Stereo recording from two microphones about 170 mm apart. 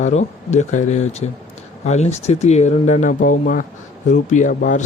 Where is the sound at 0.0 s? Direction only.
40° left (ahead or behind).